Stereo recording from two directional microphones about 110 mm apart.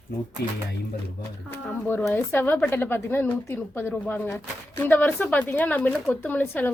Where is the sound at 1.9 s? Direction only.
20° left (ahead or behind).